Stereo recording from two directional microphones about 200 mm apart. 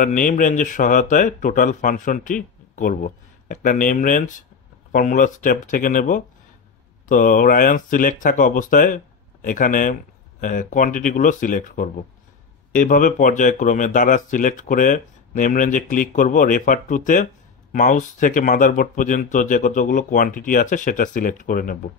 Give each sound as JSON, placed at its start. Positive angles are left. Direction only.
{"t": 0.0, "sound": "speech", "side_deg": 40}